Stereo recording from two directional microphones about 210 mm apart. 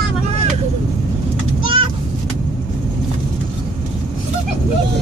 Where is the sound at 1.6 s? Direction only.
25° right (ahead or behind).